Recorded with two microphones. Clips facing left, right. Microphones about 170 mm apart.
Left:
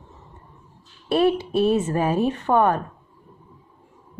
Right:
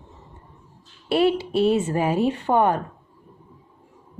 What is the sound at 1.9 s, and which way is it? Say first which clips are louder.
Speech: even; 15° right (ahead or behind).